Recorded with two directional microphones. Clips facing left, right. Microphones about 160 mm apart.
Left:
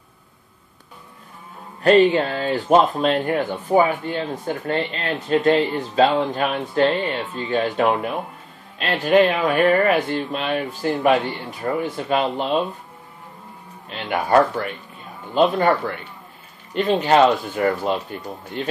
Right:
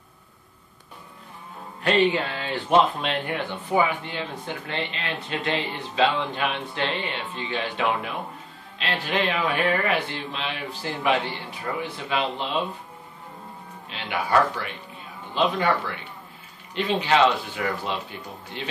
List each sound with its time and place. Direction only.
1.8 s music: 40° left (ahead or behind)
2.1 s speech: 40° left (ahead or behind)
13.8 s speech: 45° left (ahead or behind)
16.7 s speech: 45° left (ahead or behind)